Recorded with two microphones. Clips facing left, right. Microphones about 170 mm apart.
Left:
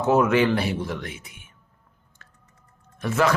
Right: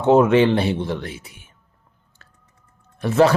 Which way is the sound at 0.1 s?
30° right (ahead or behind).